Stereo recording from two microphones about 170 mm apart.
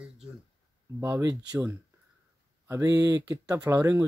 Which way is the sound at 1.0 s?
20° right (ahead or behind).